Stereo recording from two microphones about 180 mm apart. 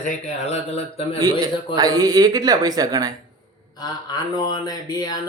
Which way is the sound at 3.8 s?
20° left (ahead or behind).